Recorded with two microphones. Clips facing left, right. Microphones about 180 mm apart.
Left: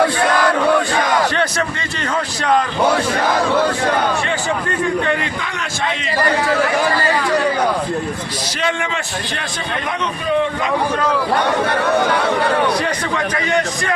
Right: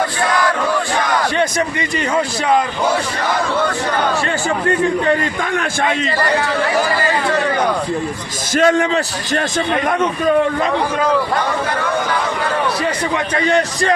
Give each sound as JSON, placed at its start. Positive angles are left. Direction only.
{"t": 8.5, "sound": "a man's voice", "side_deg": -45}